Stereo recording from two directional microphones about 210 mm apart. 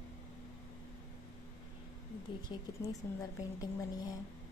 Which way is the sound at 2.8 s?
15° left (ahead or behind).